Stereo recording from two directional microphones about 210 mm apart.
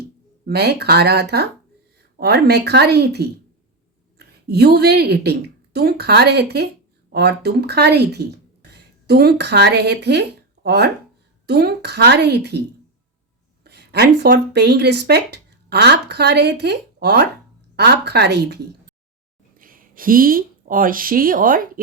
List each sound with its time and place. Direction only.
0.4 s a woman's voice: 50° right (ahead or behind)
13.7 s a woman's voice: 50° right (ahead or behind)